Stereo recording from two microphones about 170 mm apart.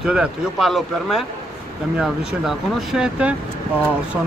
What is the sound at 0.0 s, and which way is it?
Speech, 5° right (ahead or behind).